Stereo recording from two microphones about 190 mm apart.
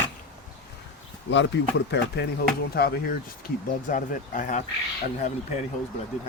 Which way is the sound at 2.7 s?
55° left (ahead or behind).